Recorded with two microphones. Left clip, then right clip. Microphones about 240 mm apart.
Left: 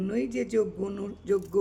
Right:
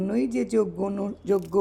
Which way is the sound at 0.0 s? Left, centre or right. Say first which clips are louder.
Right 3 dB; centre.